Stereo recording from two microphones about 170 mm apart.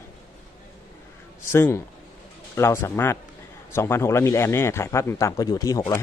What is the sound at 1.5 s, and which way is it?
A man's voice, 15° left (ahead or behind).